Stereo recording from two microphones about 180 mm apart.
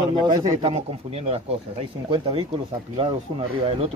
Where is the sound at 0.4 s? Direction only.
25° right (ahead or behind).